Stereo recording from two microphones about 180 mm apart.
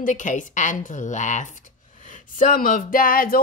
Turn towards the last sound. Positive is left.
turn(degrees=50)  # may be behind; listen again after turning